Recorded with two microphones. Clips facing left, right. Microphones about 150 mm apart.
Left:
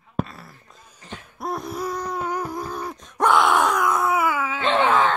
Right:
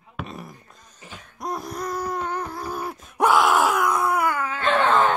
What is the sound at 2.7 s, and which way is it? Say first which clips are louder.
Groan: right 1 dB; 5° right (ahead or behind).